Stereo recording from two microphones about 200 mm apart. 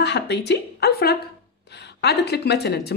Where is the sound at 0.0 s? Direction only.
60° left (ahead or behind).